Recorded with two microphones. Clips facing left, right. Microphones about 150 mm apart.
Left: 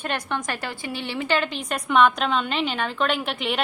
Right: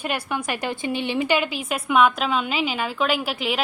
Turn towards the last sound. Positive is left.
turn(degrees=0)  # may be behind; listen again after turning